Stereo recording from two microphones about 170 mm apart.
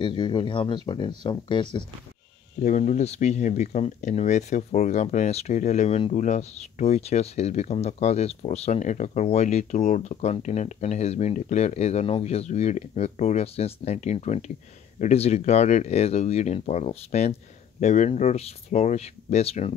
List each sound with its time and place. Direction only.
0.0 s speech: 25° left (ahead or behind)
2.6 s speech: 45° left (ahead or behind)